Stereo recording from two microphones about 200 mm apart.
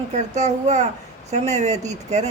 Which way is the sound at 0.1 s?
35° right (ahead or behind).